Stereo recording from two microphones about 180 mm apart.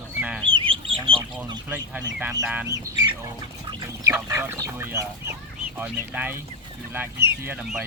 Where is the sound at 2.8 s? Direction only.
20° right (ahead or behind).